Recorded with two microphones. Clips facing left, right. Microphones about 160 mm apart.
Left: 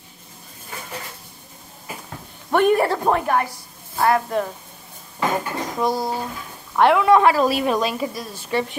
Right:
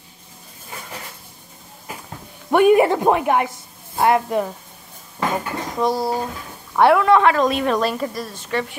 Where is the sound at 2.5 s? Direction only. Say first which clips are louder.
Right 4 dB; 10° right (ahead or behind).